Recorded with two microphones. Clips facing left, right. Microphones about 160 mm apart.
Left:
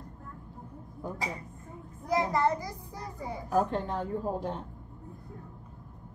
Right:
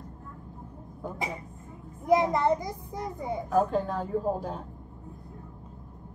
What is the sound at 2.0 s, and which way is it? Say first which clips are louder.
A child's voice: right 4 dB; 20° right (ahead or behind).